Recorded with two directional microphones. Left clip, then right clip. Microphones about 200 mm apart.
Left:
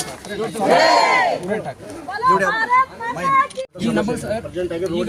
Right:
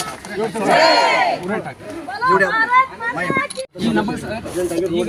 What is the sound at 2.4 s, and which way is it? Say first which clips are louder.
Speech: right 3 dB; 5° left (ahead or behind).